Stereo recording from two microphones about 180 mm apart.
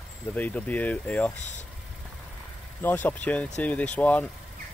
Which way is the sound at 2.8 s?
10° left (ahead or behind).